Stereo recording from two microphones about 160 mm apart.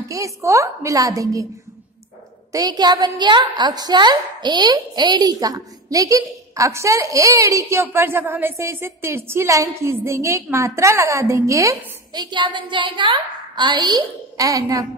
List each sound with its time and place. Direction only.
0.1 s a woman's voice: 20° right (ahead or behind)
2.5 s a woman's voice: 25° right (ahead or behind)